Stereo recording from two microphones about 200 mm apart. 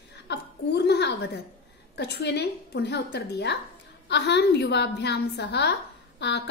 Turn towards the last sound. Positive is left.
turn(degrees=55)  # may be behind; listen again after turning